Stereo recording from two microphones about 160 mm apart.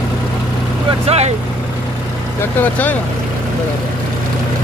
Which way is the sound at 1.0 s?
40° right (ahead or behind).